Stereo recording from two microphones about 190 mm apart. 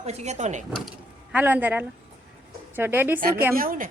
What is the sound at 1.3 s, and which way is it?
Speech, 10° right (ahead or behind).